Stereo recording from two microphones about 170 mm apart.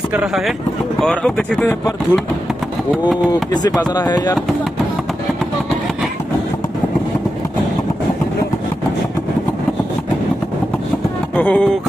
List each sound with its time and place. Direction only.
1.0 s speech: 5° left (ahead or behind)
3.6 s speech: 25° left (ahead or behind)
11.3 s speech: 5° left (ahead or behind)